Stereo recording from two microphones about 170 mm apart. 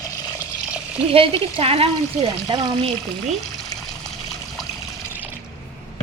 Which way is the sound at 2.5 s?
25° right (ahead or behind).